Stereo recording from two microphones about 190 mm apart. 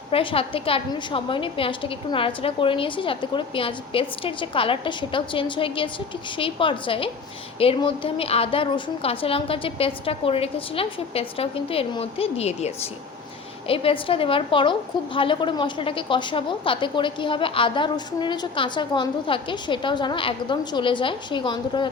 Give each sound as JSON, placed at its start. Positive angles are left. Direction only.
{"t": 0.1, "sound": "a woman's voice", "side_deg": 30}